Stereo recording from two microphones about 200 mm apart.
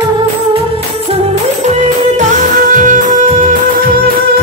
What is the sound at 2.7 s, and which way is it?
Music, 40° right (ahead or behind).